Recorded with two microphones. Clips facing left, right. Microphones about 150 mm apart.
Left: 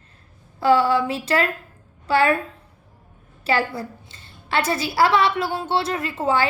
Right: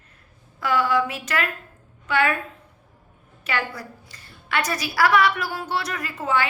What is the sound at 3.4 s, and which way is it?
A woman's voice, 30° left (ahead or behind).